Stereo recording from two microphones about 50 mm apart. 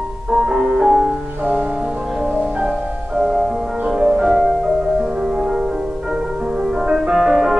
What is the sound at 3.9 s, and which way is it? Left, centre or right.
Music, centre.